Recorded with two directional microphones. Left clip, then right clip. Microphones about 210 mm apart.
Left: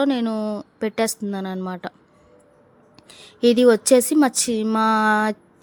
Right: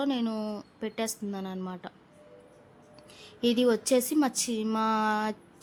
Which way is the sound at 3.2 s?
25° left (ahead or behind).